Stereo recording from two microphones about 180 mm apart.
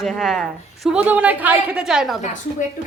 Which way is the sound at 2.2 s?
45° left (ahead or behind).